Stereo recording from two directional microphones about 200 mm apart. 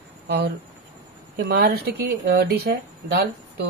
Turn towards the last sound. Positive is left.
turn(degrees=-55)  # may be behind; listen again after turning